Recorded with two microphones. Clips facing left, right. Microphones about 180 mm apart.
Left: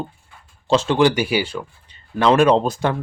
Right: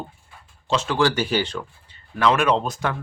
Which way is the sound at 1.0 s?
15° left (ahead or behind).